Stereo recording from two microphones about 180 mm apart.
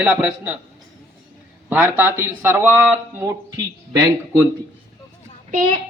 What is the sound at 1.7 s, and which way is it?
Speech, 10° right (ahead or behind).